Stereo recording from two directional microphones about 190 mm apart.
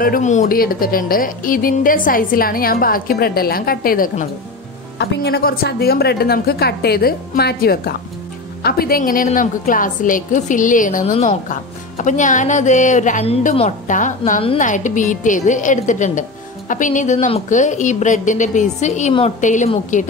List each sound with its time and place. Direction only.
0.0 s speech: 45° left (ahead or behind)
4.9 s a woman's voice: 60° left (ahead or behind); by 20.1 s 40° left (ahead or behind)